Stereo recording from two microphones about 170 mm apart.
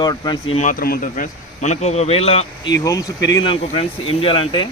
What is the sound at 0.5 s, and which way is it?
A man's voice, 50° left (ahead or behind).